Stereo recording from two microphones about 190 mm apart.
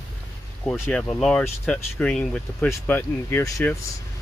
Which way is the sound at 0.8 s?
5° left (ahead or behind).